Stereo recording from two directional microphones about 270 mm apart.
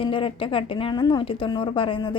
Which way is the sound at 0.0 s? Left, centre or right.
Centre.